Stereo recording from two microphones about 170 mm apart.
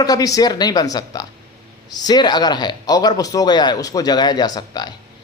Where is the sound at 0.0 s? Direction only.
20° left (ahead or behind).